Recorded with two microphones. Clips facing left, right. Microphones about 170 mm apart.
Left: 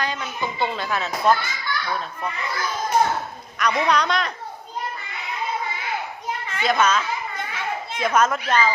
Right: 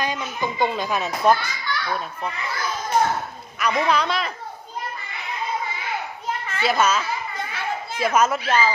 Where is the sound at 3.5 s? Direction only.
5° right (ahead or behind).